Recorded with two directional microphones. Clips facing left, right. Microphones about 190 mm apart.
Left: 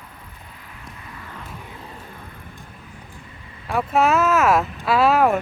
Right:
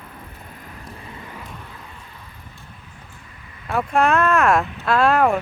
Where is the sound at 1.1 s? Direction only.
15° right (ahead or behind).